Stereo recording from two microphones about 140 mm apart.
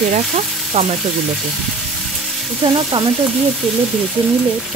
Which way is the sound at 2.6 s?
35° right (ahead or behind).